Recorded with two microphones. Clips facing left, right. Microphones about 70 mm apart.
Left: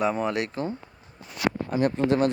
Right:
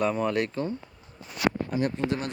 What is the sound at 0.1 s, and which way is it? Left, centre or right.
Speech, centre.